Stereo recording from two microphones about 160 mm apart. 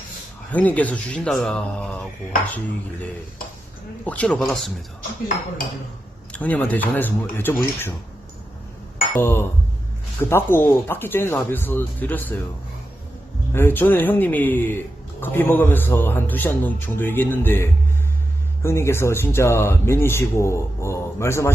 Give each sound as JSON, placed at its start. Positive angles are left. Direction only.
{"t": 0.5, "sound": "speech", "side_deg": 10}
{"t": 6.3, "sound": "speech", "side_deg": 10}
{"t": 9.1, "sound": "speech", "side_deg": 15}
{"t": 13.5, "sound": "speech", "side_deg": 15}